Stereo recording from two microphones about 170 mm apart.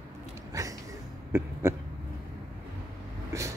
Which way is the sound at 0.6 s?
20° right (ahead or behind).